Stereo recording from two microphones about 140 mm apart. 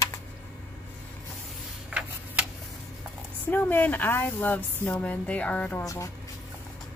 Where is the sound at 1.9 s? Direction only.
10° right (ahead or behind).